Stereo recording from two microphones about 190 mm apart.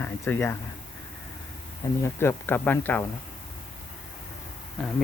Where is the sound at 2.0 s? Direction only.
10° left (ahead or behind).